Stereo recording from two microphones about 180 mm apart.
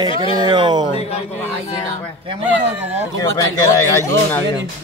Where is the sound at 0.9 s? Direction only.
35° left (ahead or behind).